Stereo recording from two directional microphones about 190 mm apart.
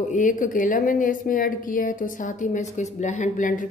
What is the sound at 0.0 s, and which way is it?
Speech, 40° left (ahead or behind).